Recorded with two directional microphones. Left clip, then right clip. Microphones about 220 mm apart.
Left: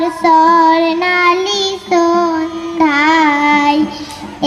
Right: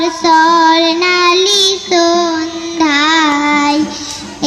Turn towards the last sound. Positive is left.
turn(degrees=25)  # may be behind; listen again after turning